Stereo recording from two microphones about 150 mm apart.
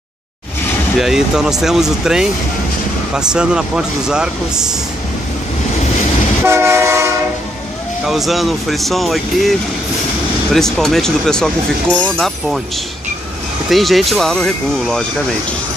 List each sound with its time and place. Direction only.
0.9 s speech: centre (ahead or behind)
6.4 s train: 15° right (ahead or behind)
8.0 s speech: centre (ahead or behind)
13.7 s speech: centre (ahead or behind)